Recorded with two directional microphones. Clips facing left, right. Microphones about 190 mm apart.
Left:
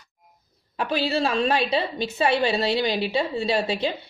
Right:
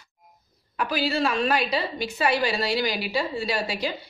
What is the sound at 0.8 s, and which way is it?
A woman's voice, 25° left (ahead or behind).